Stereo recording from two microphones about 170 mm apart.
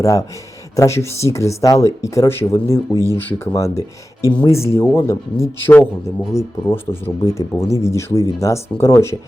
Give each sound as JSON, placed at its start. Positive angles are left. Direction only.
{"t": 0.0, "sound": "speech", "side_deg": 20}